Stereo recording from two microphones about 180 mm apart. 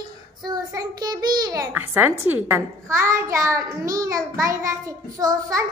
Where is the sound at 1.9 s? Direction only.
10° right (ahead or behind).